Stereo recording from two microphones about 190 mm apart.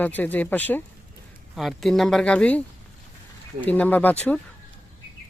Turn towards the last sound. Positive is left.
turn(degrees=10)  # may be behind; listen again after turning